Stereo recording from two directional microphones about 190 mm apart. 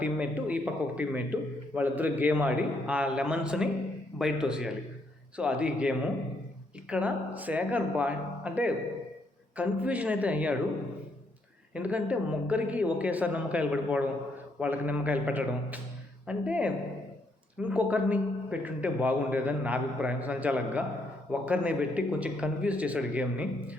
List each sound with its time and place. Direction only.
0.0 s a man's voice: 10° right (ahead or behind)
11.7 s a man's voice: 5° right (ahead or behind)